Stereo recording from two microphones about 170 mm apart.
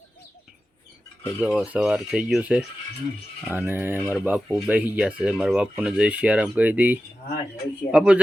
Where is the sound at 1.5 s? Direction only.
5° right (ahead or behind).